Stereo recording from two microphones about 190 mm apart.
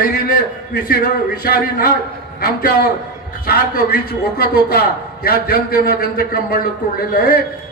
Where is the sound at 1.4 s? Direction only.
55° left (ahead or behind).